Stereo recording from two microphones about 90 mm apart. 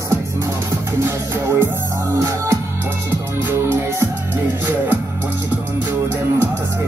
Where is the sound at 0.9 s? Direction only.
30° right (ahead or behind).